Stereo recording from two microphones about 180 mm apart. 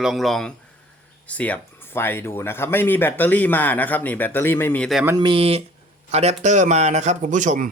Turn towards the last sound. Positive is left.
turn(degrees=-45)  # may be behind; listen again after turning